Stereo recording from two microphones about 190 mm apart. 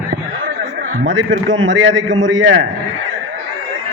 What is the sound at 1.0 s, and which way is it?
A man's voice, 75° right (ahead or behind).